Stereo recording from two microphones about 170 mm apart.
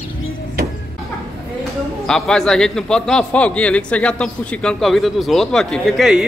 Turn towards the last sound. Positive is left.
turn(degrees=-5)  # may be behind; listen again after turning